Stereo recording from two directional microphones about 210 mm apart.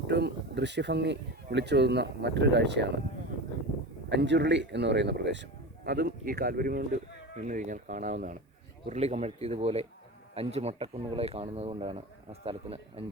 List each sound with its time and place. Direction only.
0.1 s speech: 50° right (ahead or behind)
4.1 s speech: 55° right (ahead or behind); by 13.1 s 25° right (ahead or behind)